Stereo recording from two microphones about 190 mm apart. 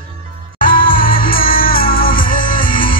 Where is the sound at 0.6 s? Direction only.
50° left (ahead or behind).